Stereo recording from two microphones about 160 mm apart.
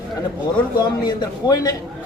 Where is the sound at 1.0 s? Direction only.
25° left (ahead or behind).